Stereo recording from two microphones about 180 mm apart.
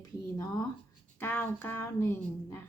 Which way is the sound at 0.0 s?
20° left (ahead or behind).